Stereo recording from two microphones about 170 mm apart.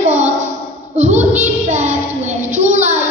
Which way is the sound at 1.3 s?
40° right (ahead or behind).